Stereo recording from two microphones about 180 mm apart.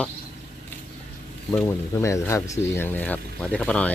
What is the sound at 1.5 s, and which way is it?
Speech, 10° left (ahead or behind).